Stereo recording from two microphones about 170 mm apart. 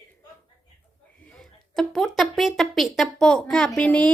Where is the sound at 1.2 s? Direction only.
5° left (ahead or behind).